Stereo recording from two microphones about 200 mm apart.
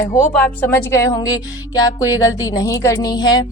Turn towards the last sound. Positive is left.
turn(degrees=20)  # may be behind; listen again after turning